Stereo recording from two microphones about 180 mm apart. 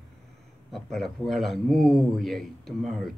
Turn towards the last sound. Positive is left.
turn(degrees=0)  # may be behind; listen again after turning